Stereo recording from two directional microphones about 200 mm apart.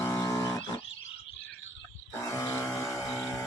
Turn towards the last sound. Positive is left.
turn(degrees=15)  # may be behind; listen again after turning